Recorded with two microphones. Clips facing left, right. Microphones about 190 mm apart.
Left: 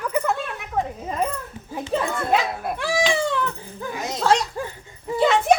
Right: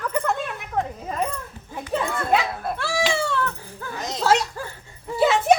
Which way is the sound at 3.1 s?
15° left (ahead or behind).